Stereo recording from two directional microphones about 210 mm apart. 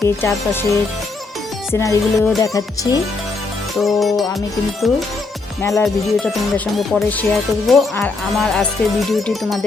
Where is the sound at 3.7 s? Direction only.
Centre (ahead or behind).